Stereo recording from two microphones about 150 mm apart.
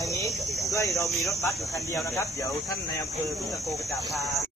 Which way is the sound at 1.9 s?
20° left (ahead or behind).